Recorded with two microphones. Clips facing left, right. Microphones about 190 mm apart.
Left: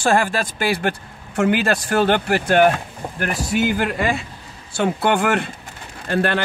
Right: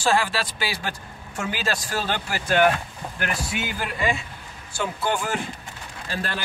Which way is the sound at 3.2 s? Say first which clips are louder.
Left 8 dB; 45° left (ahead or behind).